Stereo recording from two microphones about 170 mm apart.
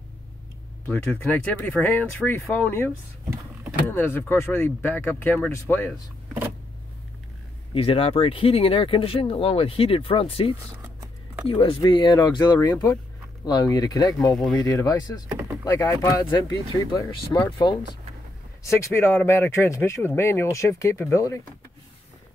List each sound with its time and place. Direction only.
0.8 s speech: 5° left (ahead or behind)
3.9 s speech: 10° left (ahead or behind)
7.7 s speech: 35° left (ahead or behind)
10.8 s a sound: 15° right (ahead or behind)
11.4 s speech: 30° left (ahead or behind)
14.3 s speech: centre (ahead or behind)
14.6 s speech: 20° left (ahead or behind)
18.8 s speech: 15° left (ahead or behind)